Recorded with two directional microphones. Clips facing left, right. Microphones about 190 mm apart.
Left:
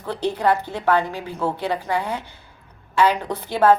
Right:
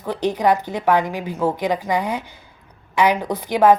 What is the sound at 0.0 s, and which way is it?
A woman's voice, 15° right (ahead or behind).